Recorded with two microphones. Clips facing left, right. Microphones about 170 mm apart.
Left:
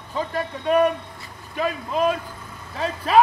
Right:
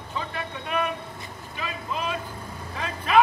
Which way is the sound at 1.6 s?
45° left (ahead or behind).